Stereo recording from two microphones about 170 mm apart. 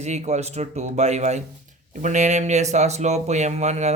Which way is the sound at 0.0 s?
40° right (ahead or behind).